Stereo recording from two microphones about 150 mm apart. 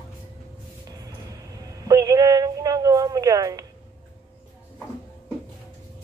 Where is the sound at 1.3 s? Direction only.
25° right (ahead or behind).